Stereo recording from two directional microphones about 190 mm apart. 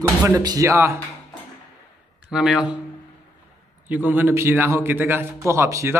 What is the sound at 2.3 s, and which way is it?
Speech, 5° right (ahead or behind).